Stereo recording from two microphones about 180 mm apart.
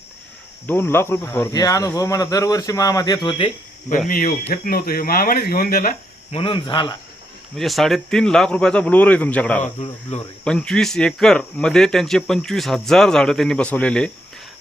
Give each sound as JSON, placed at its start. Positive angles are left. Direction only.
{"t": 0.7, "sound": "speech", "side_deg": 15}
{"t": 4.5, "sound": "speech", "side_deg": 55}
{"t": 6.3, "sound": "speech", "side_deg": 30}
{"t": 7.5, "sound": "speech", "side_deg": 0}